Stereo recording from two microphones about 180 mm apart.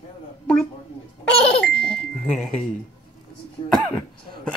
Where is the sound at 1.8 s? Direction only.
5° left (ahead or behind).